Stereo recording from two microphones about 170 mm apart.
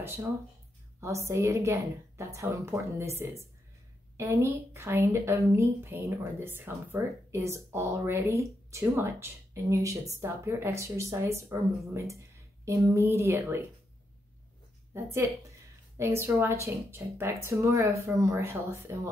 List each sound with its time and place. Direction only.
0.0 s speech: 15° right (ahead or behind)
15.0 s speech: 15° right (ahead or behind)